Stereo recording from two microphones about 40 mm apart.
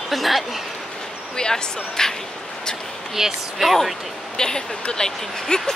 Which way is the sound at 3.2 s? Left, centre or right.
Centre.